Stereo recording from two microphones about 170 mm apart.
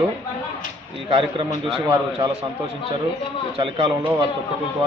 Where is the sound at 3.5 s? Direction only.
30° right (ahead or behind).